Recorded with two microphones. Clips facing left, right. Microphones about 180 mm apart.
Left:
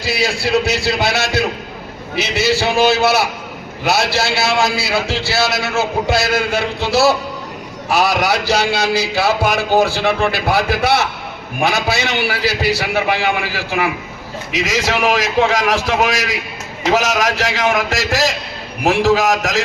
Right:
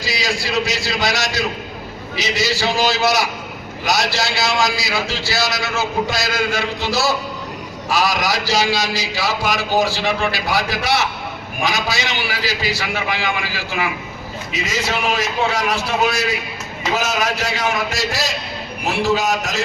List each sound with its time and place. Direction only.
0.0 s a man's voice: 60° left (ahead or behind)
14.5 s a man's voice: 90° left